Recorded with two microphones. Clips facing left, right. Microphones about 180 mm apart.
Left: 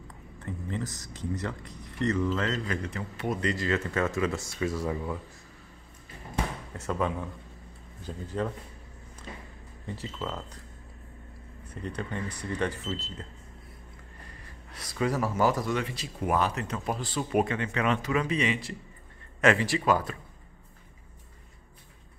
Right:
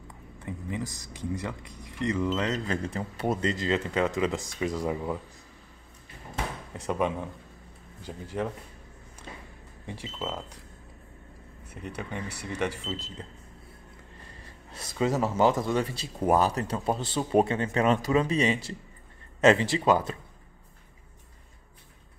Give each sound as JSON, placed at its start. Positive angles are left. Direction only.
{"t": 0.4, "sound": "speech", "side_deg": -10}
{"t": 2.6, "sound": "speech", "side_deg": -30}
{"t": 6.7, "sound": "speech", "side_deg": -15}
{"t": 9.8, "sound": "speech", "side_deg": -15}
{"t": 11.7, "sound": "speech", "side_deg": -10}
{"t": 14.7, "sound": "speech", "side_deg": -25}
{"t": 19.4, "sound": "speech", "side_deg": -25}